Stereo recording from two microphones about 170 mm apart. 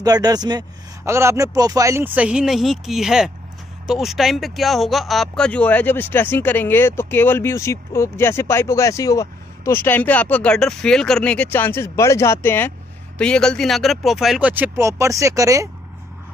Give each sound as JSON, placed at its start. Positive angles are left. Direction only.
{"t": 0.0, "sound": "speech", "side_deg": -20}